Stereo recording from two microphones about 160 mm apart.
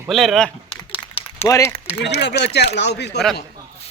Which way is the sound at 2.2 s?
90° left.